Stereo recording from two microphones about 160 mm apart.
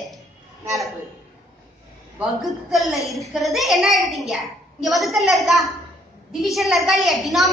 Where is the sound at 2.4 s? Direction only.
Centre (ahead or behind).